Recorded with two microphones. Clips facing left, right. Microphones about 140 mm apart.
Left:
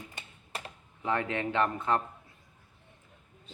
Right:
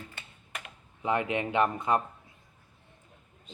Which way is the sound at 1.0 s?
15° right (ahead or behind).